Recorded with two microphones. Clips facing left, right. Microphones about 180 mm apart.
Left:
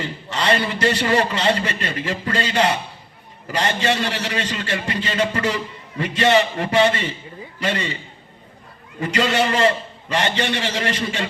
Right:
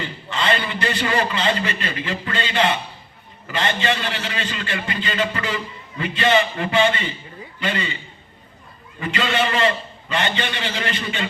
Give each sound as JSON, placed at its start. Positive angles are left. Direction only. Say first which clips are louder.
{"t": 0.0, "sound": "a man's voice", "louder": "left 1 dB", "side_deg": 40}
{"t": 9.0, "sound": "a man's voice", "louder": "left 3 dB", "side_deg": 40}